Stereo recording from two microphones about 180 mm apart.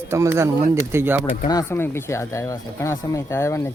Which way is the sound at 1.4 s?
15° left (ahead or behind).